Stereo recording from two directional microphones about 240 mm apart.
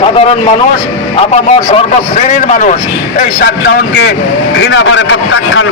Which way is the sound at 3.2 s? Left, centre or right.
Left.